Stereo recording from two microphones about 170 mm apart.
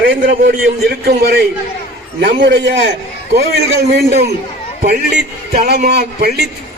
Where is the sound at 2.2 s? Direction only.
85° right.